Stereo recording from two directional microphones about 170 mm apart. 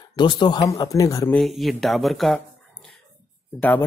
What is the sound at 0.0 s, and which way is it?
Speech, 25° left (ahead or behind).